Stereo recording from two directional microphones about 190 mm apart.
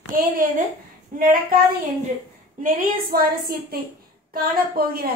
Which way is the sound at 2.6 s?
45° right (ahead or behind).